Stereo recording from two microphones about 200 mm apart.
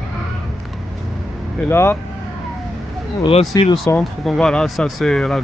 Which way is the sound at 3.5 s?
15° left (ahead or behind).